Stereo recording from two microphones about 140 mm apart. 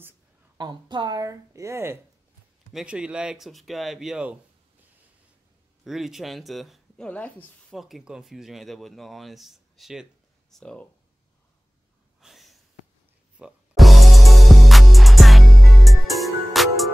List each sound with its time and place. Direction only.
0.6 s a woman's voice: 30° right (ahead or behind)
2.7 s speech: 5° right (ahead or behind)
5.9 s speech: centre (ahead or behind)
7.1 s speech: 10° left (ahead or behind)
7.7 s speech: centre (ahead or behind)
12.2 s a sound: centre (ahead or behind)
13.4 s music: centre (ahead or behind)